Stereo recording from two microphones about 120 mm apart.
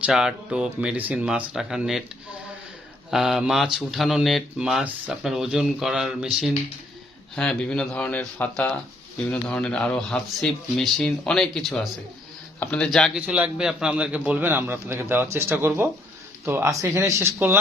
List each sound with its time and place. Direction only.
0.0 s a man's voice: 5° right (ahead or behind)
3.1 s speech: 5° right (ahead or behind)
7.3 s speech: 5° left (ahead or behind)
13.1 s a man's voice: 10° right (ahead or behind)